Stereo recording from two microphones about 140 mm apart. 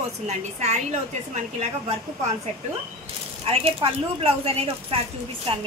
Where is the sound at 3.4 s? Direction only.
45° right (ahead or behind).